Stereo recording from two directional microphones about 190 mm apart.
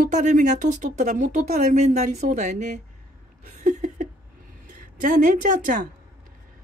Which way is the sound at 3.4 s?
40° right (ahead or behind).